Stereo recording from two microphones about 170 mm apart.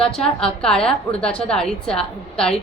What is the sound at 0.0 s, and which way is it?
A woman's voice, 5° left (ahead or behind).